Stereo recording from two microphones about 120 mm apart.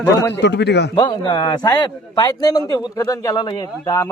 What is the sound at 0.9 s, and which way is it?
A man's voice, 40° left (ahead or behind).